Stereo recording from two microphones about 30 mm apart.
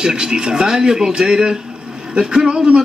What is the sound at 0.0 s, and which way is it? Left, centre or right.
A man's voice, right.